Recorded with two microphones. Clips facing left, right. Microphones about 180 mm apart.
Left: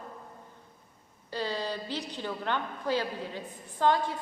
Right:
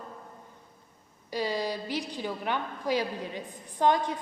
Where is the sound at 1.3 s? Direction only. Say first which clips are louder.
Right 3 dB; 10° right (ahead or behind).